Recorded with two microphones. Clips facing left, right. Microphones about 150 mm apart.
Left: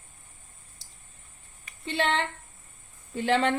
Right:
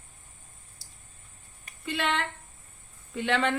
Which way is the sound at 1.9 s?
30° left (ahead or behind).